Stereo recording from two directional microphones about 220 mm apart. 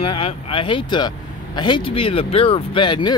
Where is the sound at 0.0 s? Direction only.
25° left (ahead or behind).